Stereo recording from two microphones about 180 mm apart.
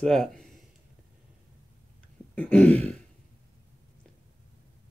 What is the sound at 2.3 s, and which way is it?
Throat clearing, 10° left (ahead or behind).